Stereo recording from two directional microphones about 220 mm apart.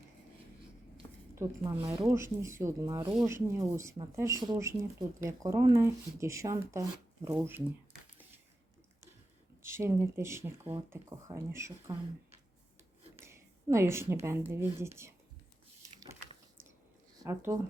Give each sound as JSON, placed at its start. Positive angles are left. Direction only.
{"t": 1.4, "sound": "speech", "side_deg": -15}
{"t": 9.6, "sound": "speech", "side_deg": -10}
{"t": 13.1, "sound": "a sound", "side_deg": -10}
{"t": 14.3, "sound": "speech", "side_deg": -10}
{"t": 17.2, "sound": "speech", "side_deg": -15}